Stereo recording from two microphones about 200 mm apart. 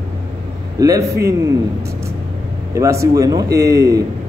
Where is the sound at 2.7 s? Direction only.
15° right (ahead or behind).